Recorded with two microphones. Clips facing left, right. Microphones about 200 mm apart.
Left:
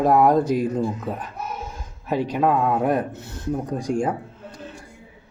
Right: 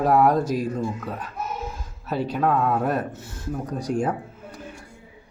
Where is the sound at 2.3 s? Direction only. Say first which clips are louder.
Left 1 dB; 10° left (ahead or behind).